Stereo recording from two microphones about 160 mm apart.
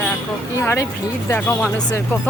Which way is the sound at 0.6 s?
15° left (ahead or behind).